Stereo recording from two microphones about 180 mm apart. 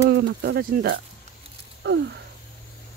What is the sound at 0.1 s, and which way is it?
Speech, 70° right (ahead or behind).